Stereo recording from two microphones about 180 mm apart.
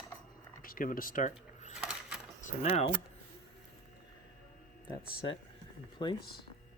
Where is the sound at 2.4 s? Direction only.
35° left (ahead or behind).